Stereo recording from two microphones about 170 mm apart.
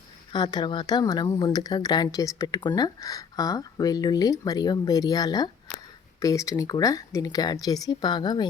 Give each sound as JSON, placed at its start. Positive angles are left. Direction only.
{"t": 0.3, "sound": "speech", "side_deg": 25}